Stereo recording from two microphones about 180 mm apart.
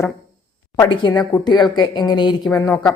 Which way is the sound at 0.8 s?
25° left (ahead or behind).